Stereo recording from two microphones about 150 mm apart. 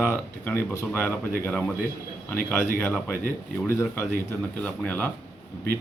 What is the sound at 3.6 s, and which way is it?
A man's voice, 15° left (ahead or behind).